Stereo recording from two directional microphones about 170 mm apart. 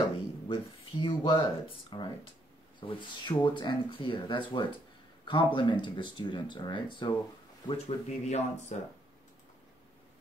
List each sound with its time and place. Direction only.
0.5 s speech: 30° left (ahead or behind)
7.6 s speech: 40° left (ahead or behind)